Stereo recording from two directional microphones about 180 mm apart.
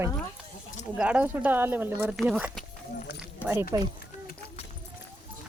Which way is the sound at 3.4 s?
10° left (ahead or behind).